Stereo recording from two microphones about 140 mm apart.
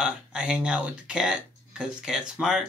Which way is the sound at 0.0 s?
5° right (ahead or behind).